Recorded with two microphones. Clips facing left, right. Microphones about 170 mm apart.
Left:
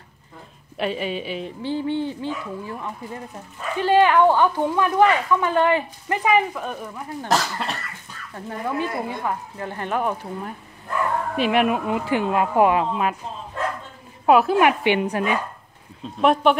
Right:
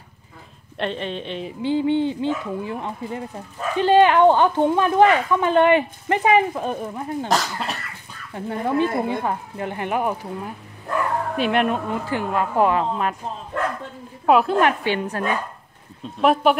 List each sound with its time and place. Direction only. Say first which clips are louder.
0.7 s speech: left 1 dB; 5° left (ahead or behind)
1.6 s speech: right 5 dB; 20° right (ahead or behind)
7.2 s speech: left 2 dB; centre (ahead or behind)
8.3 s speech: right 5 dB; 20° right (ahead or behind)
11.3 s speech: left 1 dB; centre (ahead or behind)
11.9 s speech: left 2 dB; 15° left (ahead or behind)
13.5 s bow-wow: right 2 dB; 70° right (ahead or behind)
14.2 s speech: left 1 dB; centre (ahead or behind)
14.6 s speech: left 2 dB; 15° left (ahead or behind)
16.2 s speech: even; centre (ahead or behind)